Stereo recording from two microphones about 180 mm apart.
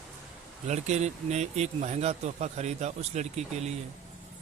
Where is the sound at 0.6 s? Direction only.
40° right (ahead or behind).